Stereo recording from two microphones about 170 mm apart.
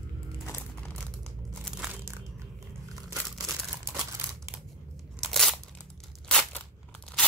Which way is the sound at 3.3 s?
Centre (ahead or behind).